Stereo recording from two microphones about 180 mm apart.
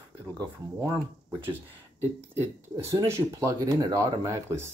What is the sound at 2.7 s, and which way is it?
Speech, 20° right (ahead or behind).